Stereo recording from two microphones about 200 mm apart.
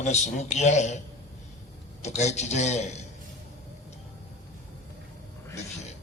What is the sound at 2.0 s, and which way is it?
A man's voice, 35° left (ahead or behind).